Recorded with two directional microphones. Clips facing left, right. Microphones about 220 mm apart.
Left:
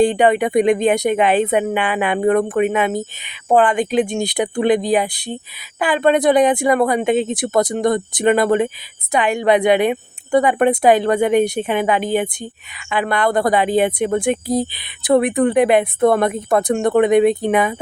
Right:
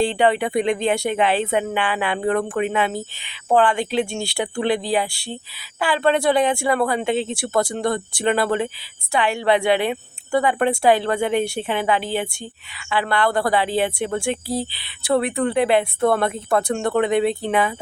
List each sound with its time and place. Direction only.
0.0 s a woman's voice: 15° left (ahead or behind)